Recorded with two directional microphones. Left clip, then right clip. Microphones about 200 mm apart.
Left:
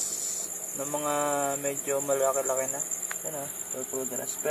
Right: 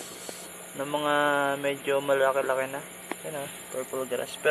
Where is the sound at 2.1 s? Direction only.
Centre (ahead or behind).